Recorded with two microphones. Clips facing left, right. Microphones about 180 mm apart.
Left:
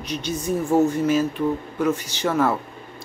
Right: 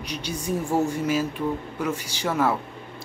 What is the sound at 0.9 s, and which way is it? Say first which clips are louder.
Speech: left 4 dB; 10° right (ahead or behind).